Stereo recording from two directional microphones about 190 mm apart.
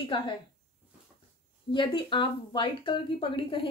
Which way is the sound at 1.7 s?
25° left (ahead or behind).